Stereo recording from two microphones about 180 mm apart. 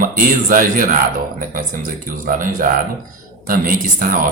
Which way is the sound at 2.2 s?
50° right (ahead or behind).